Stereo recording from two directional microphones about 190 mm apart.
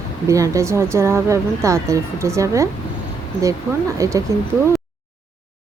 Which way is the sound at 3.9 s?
15° right (ahead or behind).